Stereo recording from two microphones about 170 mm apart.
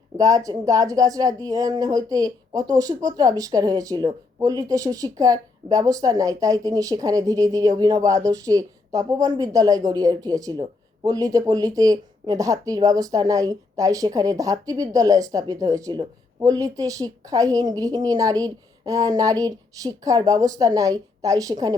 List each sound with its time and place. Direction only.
0.2 s a woman's voice: 20° right (ahead or behind)